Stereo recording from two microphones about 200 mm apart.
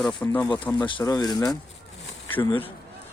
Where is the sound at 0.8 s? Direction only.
20° left (ahead or behind).